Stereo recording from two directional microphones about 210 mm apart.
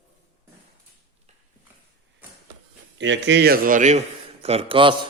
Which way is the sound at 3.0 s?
60° right (ahead or behind).